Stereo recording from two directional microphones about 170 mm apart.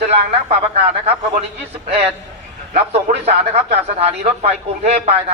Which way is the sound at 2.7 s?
40° right (ahead or behind).